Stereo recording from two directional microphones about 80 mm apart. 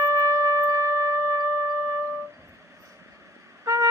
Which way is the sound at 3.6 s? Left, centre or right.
Right.